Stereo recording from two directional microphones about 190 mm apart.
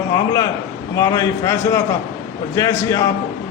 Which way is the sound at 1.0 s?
20° left (ahead or behind).